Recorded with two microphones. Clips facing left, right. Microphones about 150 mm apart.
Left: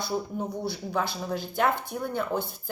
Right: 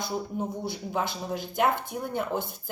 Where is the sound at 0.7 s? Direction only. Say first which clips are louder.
Left 1 dB; 20° right (ahead or behind).